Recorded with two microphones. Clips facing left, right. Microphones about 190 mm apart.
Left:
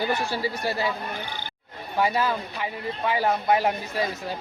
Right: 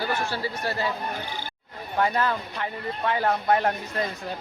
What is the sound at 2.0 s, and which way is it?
A man's voice, 10° left (ahead or behind).